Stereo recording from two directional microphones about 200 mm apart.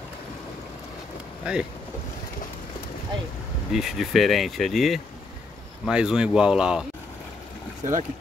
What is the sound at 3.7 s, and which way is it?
Speech, centre (ahead or behind).